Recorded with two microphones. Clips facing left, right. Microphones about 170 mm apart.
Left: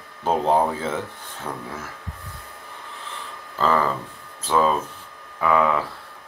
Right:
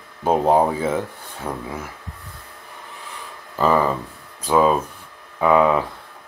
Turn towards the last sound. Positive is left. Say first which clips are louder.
# right 4 dB
turn(degrees=-20)  # may be behind; listen again after turning